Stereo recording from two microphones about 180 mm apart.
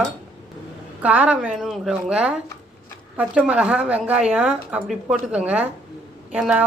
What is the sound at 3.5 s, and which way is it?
A woman's voice, 5° right (ahead or behind).